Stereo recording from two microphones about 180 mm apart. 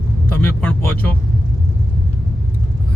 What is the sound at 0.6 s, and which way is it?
Vehicle, 10° left (ahead or behind).